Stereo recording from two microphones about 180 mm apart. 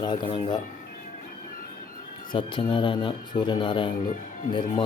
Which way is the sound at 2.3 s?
30° left (ahead or behind).